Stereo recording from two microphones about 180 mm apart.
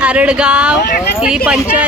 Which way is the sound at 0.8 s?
65° left (ahead or behind).